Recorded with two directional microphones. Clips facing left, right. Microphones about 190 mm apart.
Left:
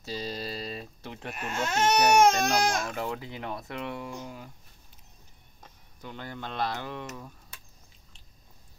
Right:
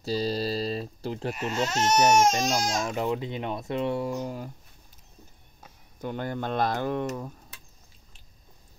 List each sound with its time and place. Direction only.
0.0 s speech: 35° right (ahead or behind)
1.3 s speech: 55° left (ahead or behind)
2.9 s speech: 20° right (ahead or behind); by 4.5 s 40° right (ahead or behind)
5.9 s speech: 50° right (ahead or behind)